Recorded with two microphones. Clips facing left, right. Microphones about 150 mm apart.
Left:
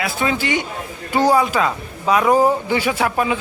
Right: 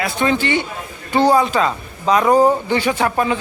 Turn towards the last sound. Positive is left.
turn(degrees=5)  # may be behind; listen again after turning